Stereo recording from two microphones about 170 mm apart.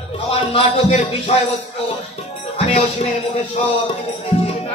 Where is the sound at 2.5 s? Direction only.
45° left (ahead or behind).